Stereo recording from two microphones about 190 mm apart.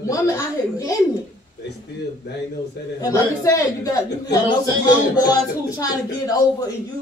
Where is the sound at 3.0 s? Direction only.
15° left (ahead or behind).